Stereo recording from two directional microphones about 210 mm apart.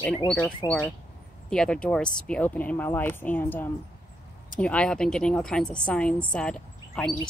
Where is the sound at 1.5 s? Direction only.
5° left (ahead or behind).